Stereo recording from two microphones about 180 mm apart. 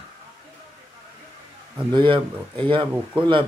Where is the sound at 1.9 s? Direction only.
25° right (ahead or behind).